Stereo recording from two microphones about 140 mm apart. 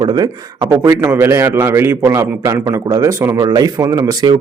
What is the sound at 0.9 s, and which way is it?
A man's voice, 15° right (ahead or behind).